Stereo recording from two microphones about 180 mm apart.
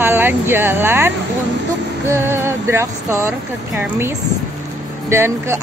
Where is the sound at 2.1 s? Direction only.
15° right (ahead or behind).